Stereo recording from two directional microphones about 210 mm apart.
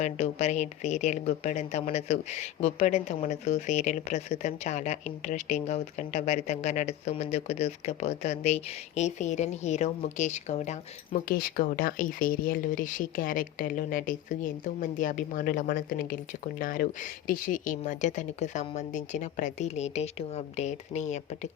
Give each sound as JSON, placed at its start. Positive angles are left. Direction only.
{"t": 0.0, "sound": "speech", "side_deg": 35}